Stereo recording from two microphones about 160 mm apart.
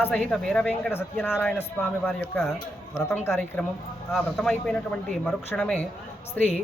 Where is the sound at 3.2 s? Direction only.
15° left (ahead or behind).